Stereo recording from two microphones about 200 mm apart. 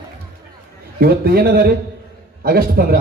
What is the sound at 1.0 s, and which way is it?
A man's voice, 50° right (ahead or behind).